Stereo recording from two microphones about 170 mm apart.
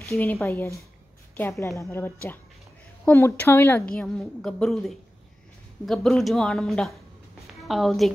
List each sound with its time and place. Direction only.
0.1 s a woman's voice: 15° left (ahead or behind)
3.9 s speech: 5° left (ahead or behind)